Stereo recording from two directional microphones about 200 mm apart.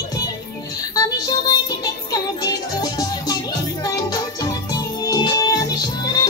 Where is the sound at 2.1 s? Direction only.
20° left (ahead or behind).